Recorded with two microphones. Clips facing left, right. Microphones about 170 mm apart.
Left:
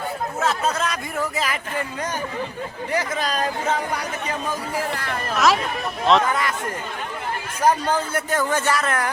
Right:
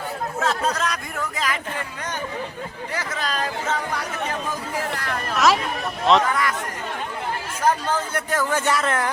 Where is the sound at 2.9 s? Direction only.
15° left (ahead or behind).